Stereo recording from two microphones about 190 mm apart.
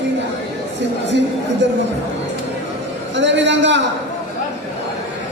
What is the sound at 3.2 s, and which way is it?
Speech, 70° right (ahead or behind).